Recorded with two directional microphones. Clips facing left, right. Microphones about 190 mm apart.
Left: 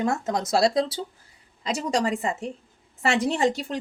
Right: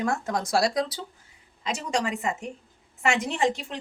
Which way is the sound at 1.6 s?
35° left (ahead or behind).